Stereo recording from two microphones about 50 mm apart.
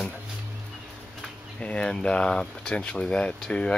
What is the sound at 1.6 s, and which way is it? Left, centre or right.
Speech, left.